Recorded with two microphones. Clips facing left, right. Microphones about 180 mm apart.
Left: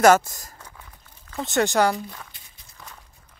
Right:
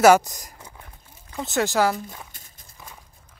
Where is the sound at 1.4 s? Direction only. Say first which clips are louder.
Left 1 dB; centre (ahead or behind).